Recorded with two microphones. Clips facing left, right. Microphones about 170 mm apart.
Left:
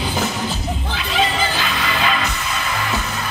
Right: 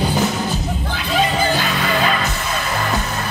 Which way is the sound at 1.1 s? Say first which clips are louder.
Right 3 dB; 45° right (ahead or behind).